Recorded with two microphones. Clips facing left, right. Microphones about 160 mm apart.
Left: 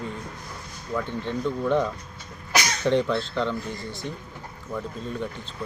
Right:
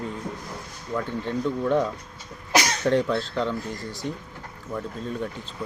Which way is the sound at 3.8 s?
35° right (ahead or behind).